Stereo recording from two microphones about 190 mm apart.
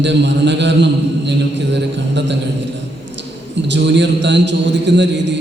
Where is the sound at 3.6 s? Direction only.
70° right (ahead or behind).